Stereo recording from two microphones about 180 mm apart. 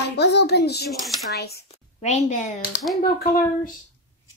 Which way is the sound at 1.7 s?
40° left (ahead or behind).